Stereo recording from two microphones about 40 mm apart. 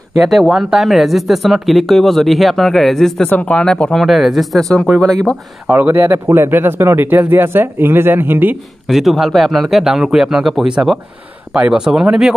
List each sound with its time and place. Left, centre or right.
0.2 s speech: centre
3.3 s speech: left
3.5 s speech: left
3.9 s speech: centre
5.7 s speech: right
8.8 s speech: centre; by 11.8 s right
11.8 s speech: centre